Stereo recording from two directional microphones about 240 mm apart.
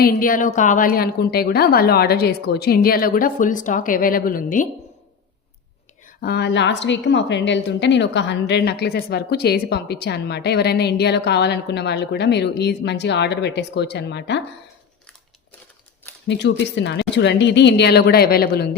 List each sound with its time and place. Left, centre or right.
0.0 s a woman's voice: left
6.1 s a woman's voice: left
16.2 s a woman's voice: left